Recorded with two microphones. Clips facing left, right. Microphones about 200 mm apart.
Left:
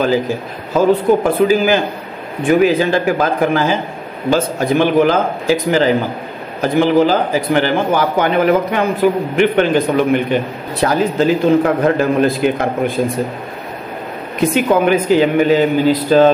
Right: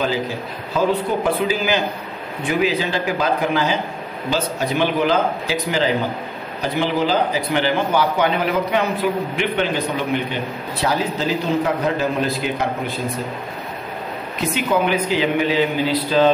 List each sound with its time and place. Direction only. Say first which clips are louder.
0.7 s a man's voice: left 7 dB; 50° left (ahead or behind)
14.5 s a man's voice: left 6 dB; 50° left (ahead or behind)